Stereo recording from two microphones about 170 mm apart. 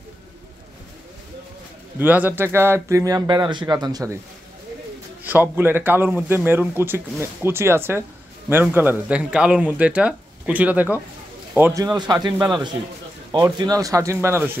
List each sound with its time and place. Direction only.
2.0 s speech: 10° right (ahead or behind)
5.2 s a man's voice: 10° right (ahead or behind)
11.8 s speech: 20° right (ahead or behind)